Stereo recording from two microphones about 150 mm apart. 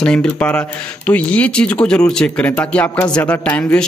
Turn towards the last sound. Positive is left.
turn(degrees=10)  # may be behind; listen again after turning